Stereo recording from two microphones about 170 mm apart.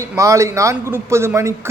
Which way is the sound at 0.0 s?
15° right (ahead or behind).